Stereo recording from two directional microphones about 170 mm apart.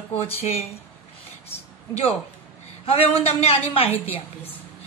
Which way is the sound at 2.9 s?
35° left (ahead or behind).